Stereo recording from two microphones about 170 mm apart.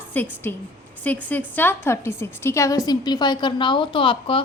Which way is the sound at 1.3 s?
10° left (ahead or behind).